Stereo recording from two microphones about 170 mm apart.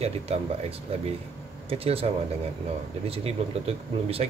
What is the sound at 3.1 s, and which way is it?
A man's voice, 35° right (ahead or behind).